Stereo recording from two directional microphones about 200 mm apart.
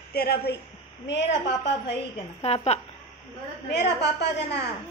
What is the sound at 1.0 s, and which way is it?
Speech, 60° left (ahead or behind).